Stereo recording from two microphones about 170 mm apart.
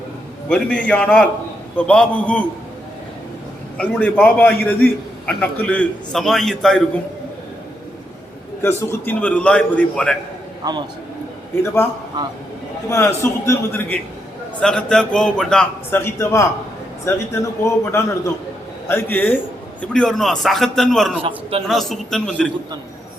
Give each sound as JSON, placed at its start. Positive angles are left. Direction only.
{"t": 0.4, "sound": "a man's voice", "side_deg": 5}
{"t": 3.8, "sound": "a man's voice", "side_deg": 10}
{"t": 8.6, "sound": "a man's voice", "side_deg": 10}
{"t": 10.6, "sound": "a man's voice", "side_deg": -25}
{"t": 11.6, "sound": "a man's voice", "side_deg": 15}
{"t": 12.9, "sound": "a man's voice", "side_deg": 15}